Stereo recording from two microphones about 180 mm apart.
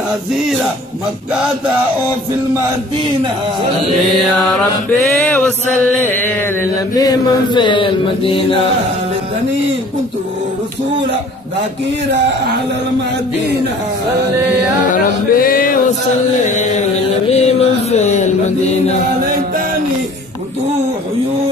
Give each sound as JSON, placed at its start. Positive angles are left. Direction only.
{"t": 5.0, "sound": "male singing", "side_deg": 5}
{"t": 6.1, "sound": "chant", "side_deg": 10}
{"t": 14.9, "sound": "music", "side_deg": 50}
{"t": 16.4, "sound": "a sound", "side_deg": 40}
{"t": 17.3, "sound": "mantra", "side_deg": 35}